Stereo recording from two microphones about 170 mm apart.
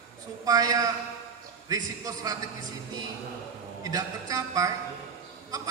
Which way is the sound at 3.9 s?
20° right (ahead or behind).